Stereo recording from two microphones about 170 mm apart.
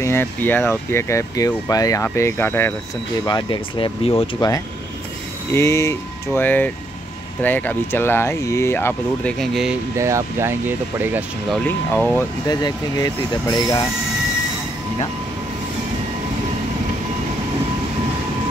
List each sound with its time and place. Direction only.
0.0 s speech: 15° left (ahead or behind)
3.3 s speech: 25° left (ahead or behind); by 9.8 s centre (ahead or behind)
9.9 s speech: 15° right (ahead or behind)
11.6 s speech: 10° left (ahead or behind)
12.4 s speech: 25° left (ahead or behind)